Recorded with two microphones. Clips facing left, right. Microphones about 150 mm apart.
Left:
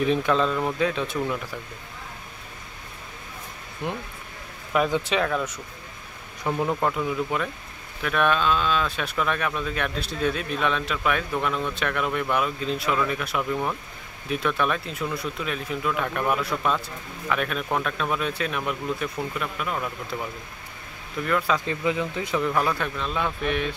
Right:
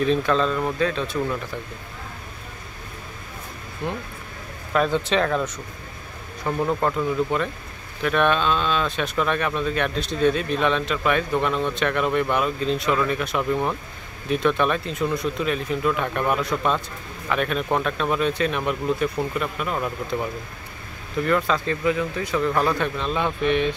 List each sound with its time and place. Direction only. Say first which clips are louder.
0.0 s speech: right 1 dB; 15° left (ahead or behind)
3.8 s speech: right 2 dB; 15° left (ahead or behind)
6.4 s speech: right 2 dB; 5° left (ahead or behind)
21.5 s speech: right 2 dB; 15° left (ahead or behind)
22.5 s speech: right 3 dB; 5° left (ahead or behind)